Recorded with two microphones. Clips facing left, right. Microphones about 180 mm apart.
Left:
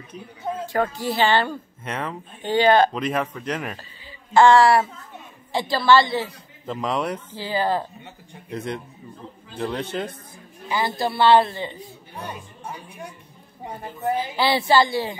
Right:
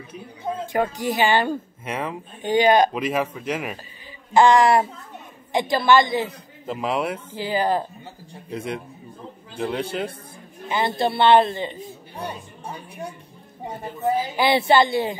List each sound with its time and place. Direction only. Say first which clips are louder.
0.7 s a woman's voice: even; 15° right (ahead or behind)
10.7 s a man's voice: right 2 dB; 25° right (ahead or behind)
14.3 s a man's voice: right 1 dB; 20° right (ahead or behind)